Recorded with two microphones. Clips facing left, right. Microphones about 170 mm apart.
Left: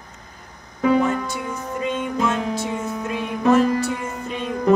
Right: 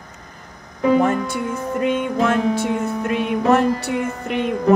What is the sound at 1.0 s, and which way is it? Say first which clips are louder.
Music: right 3 dB; 55° right (ahead or behind).